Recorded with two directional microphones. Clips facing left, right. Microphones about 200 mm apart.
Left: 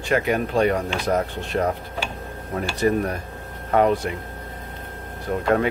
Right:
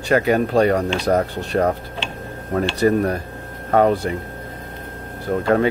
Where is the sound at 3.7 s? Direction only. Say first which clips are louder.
Right 3 dB; 35° right (ahead or behind).